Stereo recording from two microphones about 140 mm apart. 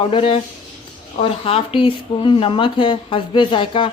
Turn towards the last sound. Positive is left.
turn(degrees=40)  # may be behind; listen again after turning